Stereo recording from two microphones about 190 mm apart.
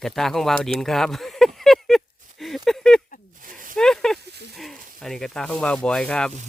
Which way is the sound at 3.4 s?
45° right (ahead or behind).